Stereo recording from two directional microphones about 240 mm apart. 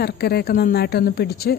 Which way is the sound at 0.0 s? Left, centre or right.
Left.